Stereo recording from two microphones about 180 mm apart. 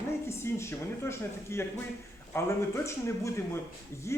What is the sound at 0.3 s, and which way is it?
Speech, 15° left (ahead or behind).